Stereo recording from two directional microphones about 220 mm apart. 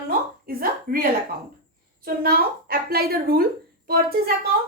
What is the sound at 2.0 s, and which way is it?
A woman's voice, 45° right (ahead or behind).